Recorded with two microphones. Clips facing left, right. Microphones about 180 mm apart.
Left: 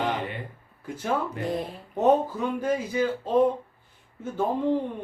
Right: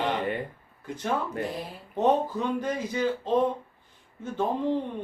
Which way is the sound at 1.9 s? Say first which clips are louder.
Left 2 dB; 10° left (ahead or behind).